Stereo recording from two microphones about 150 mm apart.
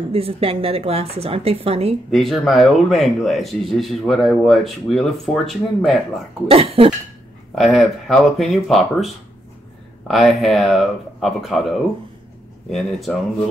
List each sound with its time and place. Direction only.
0.1 s speech: 40° right (ahead or behind)
2.0 s speech: centre (ahead or behind)
6.5 s speech: 40° right (ahead or behind)
7.5 s speech: centre (ahead or behind)